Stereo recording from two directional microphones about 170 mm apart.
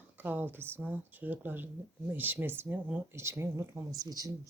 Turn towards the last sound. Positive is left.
turn(degrees=-20)  # may be behind; listen again after turning